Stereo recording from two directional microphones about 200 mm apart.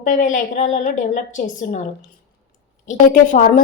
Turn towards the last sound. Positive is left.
turn(degrees=40)  # may be behind; listen again after turning